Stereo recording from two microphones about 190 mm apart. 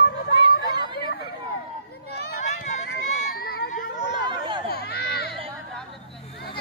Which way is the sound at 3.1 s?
35° left (ahead or behind).